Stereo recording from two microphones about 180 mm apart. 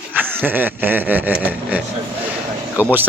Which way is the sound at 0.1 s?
10° right (ahead or behind).